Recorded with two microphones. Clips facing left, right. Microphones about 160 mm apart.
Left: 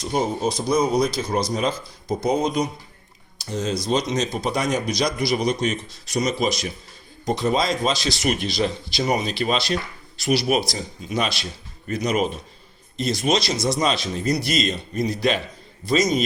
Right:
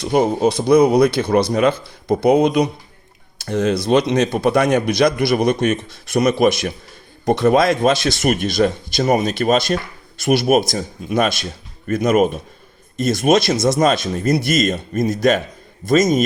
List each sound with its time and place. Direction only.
0.0 s speech: 65° right (ahead or behind)